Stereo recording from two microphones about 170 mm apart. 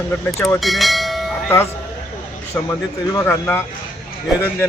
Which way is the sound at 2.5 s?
10° left (ahead or behind).